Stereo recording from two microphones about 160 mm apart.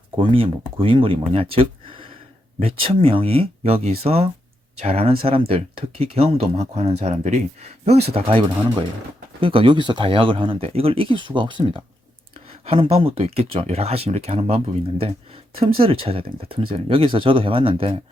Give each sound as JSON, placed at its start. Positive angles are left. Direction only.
{"t": 0.2, "sound": "speech", "side_deg": -35}